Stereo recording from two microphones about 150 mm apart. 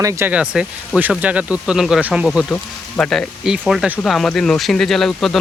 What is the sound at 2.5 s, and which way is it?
Speech, 5° left (ahead or behind).